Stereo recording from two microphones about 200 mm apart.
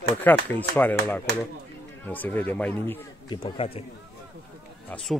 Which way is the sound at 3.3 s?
25° left (ahead or behind).